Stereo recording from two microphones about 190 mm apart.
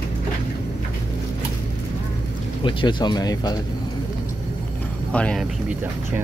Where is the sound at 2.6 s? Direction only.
25° left (ahead or behind).